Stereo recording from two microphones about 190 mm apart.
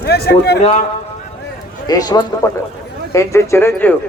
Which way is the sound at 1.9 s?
20° left (ahead or behind).